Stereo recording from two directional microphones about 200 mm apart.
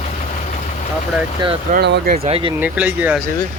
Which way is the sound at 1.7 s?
50° right (ahead or behind).